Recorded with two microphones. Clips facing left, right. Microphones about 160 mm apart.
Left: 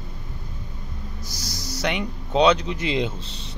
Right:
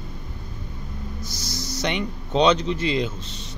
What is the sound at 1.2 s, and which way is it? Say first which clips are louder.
Speech: right 2 dB; 10° left (ahead or behind).